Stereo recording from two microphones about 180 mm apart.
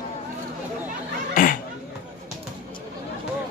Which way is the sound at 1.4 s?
50° left (ahead or behind).